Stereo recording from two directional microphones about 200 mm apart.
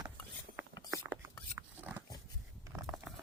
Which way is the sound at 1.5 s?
10° right (ahead or behind).